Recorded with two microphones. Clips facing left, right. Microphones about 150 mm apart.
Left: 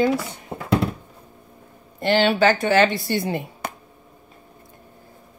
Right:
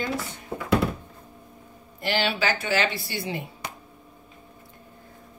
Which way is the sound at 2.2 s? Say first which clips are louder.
Left 9 dB; 45° left (ahead or behind).